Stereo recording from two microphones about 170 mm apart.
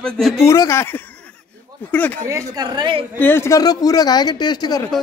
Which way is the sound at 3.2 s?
15° left (ahead or behind).